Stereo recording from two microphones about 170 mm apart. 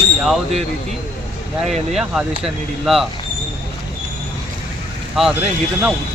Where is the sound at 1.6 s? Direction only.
Centre (ahead or behind).